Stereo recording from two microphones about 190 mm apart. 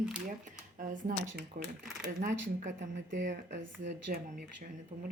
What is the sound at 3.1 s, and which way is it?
Speech, 65° right (ahead or behind).